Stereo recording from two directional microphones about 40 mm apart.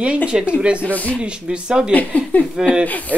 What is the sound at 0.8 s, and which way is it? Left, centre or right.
Speech, left.